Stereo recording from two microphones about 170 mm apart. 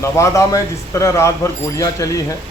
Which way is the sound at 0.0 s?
15° left (ahead or behind).